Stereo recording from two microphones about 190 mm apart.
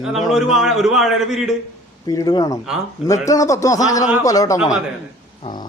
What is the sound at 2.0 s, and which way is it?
A man's voice, 20° left (ahead or behind).